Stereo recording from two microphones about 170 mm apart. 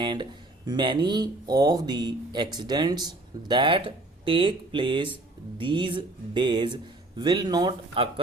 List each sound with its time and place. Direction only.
0.0 s speech: 25° right (ahead or behind)